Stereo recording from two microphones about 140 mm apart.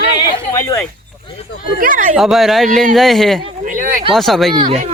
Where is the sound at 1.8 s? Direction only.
70° right (ahead or behind).